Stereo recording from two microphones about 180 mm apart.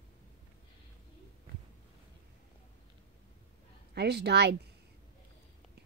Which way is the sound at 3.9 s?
65° right (ahead or behind).